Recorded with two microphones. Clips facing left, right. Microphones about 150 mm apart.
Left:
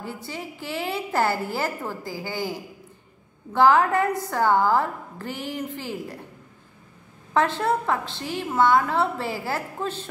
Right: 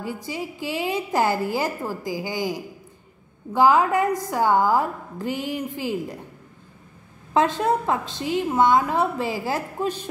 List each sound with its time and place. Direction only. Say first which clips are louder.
0.0 s a woman's voice: right 4 dB; 15° right (ahead or behind)
7.3 s a woman's voice: right 2 dB; 15° right (ahead or behind)